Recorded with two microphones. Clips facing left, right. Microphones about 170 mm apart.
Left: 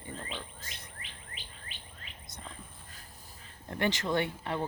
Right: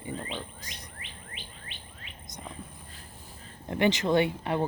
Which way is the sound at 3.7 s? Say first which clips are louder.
Right 6 dB; 20° right (ahead or behind).